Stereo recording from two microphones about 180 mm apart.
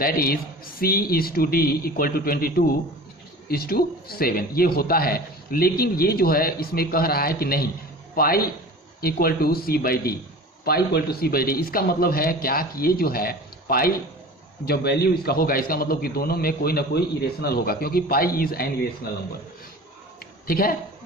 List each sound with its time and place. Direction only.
0.0 s a man's voice: 55° left (ahead or behind)
20.5 s a man's voice: 55° left (ahead or behind)